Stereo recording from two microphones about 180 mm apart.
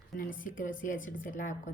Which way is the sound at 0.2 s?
50° left (ahead or behind).